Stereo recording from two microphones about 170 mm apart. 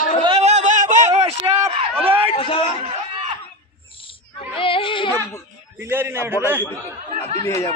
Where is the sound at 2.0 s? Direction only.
30° right (ahead or behind).